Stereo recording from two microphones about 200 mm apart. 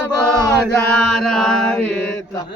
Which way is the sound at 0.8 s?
5° left (ahead or behind).